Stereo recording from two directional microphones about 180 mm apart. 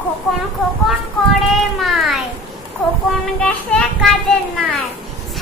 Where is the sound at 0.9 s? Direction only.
Centre (ahead or behind).